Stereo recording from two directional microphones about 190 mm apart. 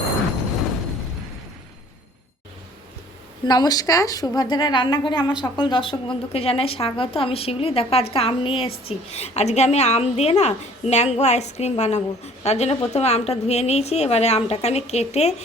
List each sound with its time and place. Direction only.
3.4 s a woman's voice: 20° left (ahead or behind)